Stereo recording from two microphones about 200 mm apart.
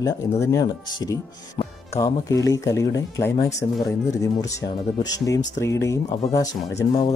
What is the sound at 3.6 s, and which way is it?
Speech, 35° left (ahead or behind).